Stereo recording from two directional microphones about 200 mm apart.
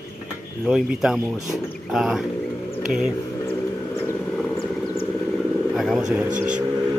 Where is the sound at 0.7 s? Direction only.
Centre (ahead or behind).